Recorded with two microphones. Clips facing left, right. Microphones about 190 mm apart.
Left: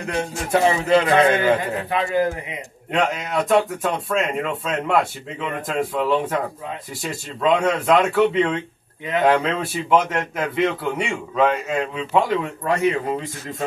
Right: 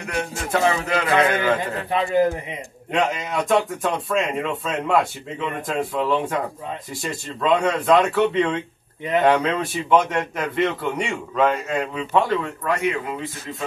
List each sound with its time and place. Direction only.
0.0 s music: 30° left (ahead or behind)
2.9 s a man's voice: centre (ahead or behind)
12.4 s speech: 30° left (ahead or behind)